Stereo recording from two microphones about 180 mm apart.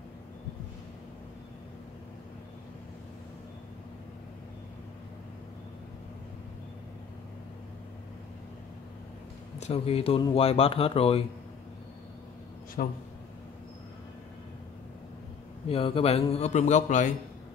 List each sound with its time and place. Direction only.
9.6 s speech: 35° left (ahead or behind)
12.8 s a man's voice: 50° left (ahead or behind)
15.7 s speech: 30° left (ahead or behind)